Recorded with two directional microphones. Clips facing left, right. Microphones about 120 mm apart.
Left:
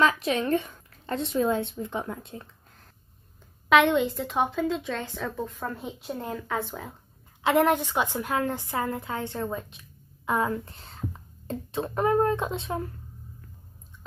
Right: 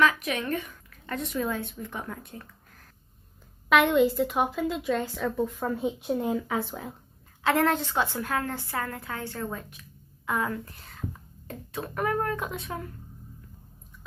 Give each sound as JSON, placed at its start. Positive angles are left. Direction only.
{"t": 0.0, "sound": "a woman's voice", "side_deg": 30}
{"t": 3.6, "sound": "a woman's voice", "side_deg": -5}
{"t": 7.4, "sound": "a woman's voice", "side_deg": 15}